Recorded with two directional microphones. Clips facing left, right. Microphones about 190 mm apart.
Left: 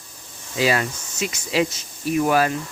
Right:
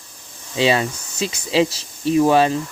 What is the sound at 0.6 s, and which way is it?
Speech, 25° right (ahead or behind).